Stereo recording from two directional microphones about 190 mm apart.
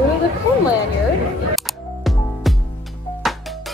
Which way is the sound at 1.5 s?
Centre (ahead or behind).